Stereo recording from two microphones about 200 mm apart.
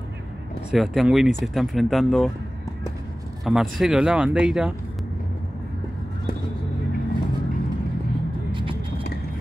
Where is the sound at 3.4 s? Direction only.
Centre (ahead or behind).